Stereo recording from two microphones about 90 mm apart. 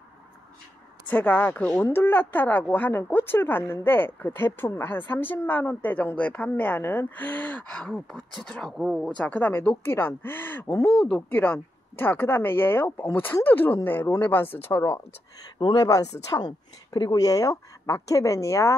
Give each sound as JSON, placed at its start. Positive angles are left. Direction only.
{"t": 1.0, "sound": "speech", "side_deg": 20}
{"t": 10.7, "sound": "a woman's voice", "side_deg": 35}
{"t": 11.0, "sound": "speech", "side_deg": 15}
{"t": 15.6, "sound": "a woman's voice", "side_deg": 45}